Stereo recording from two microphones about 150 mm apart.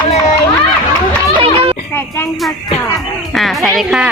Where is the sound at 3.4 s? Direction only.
Centre (ahead or behind).